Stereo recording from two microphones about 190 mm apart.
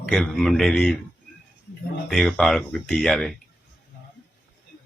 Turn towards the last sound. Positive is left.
turn(degrees=0)  # may be behind; listen again after turning